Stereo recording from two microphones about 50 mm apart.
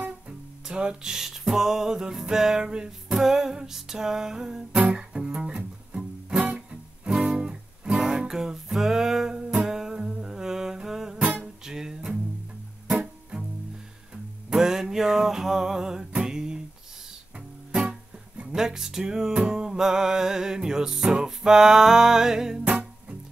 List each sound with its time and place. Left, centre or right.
0.7 s music: centre
11.1 s music: right
11.6 s music: centre
14.1 s music: centre
16.2 s a sound: centre
18.5 s music: centre